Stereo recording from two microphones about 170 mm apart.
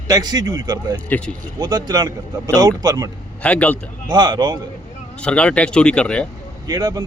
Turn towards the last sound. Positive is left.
turn(degrees=-20)  # may be behind; listen again after turning